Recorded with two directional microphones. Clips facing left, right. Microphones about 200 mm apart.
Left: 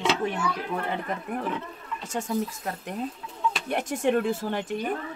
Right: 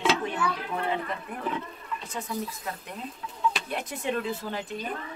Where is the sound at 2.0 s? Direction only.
45° left (ahead or behind).